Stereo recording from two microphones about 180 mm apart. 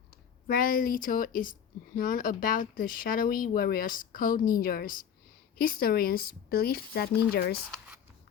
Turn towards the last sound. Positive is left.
turn(degrees=60)  # may be behind; listen again after turning